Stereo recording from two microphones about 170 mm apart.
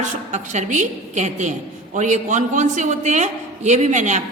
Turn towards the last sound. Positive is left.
turn(degrees=-45)  # may be behind; listen again after turning